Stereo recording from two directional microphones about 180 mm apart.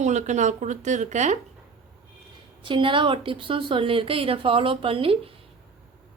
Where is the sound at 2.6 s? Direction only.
30° right (ahead or behind).